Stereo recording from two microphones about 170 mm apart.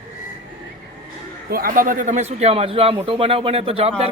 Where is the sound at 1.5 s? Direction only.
60° right (ahead or behind).